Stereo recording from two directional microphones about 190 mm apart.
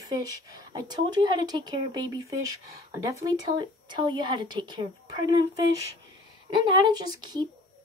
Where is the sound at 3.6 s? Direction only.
25° right (ahead or behind).